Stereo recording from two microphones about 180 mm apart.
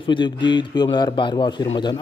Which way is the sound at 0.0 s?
25° left (ahead or behind).